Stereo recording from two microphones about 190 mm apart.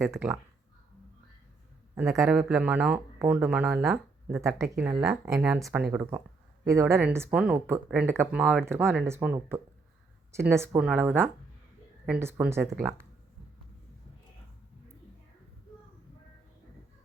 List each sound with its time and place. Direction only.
0.0 s speech: 10° right (ahead or behind)
2.1 s speech: 10° right (ahead or behind)
4.4 s speech: 15° right (ahead or behind)